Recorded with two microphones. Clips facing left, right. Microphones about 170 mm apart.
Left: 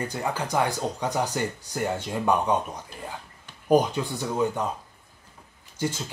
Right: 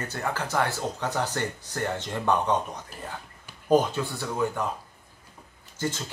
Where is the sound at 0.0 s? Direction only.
15° left (ahead or behind).